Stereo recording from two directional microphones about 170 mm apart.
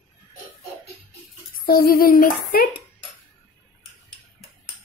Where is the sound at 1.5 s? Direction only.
60° left (ahead or behind).